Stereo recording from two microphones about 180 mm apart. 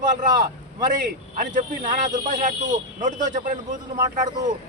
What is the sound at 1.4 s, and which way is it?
Speech, 45° right (ahead or behind).